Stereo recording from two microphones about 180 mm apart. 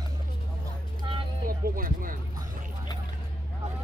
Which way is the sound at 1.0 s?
30° right (ahead or behind).